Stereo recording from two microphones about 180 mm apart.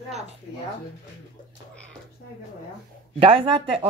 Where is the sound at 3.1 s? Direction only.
30° right (ahead or behind).